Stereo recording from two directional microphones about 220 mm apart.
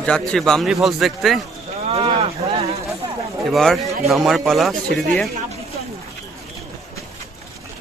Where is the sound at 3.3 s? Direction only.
Centre (ahead or behind).